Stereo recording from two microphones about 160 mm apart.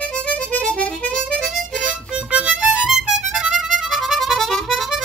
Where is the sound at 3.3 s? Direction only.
5° right (ahead or behind).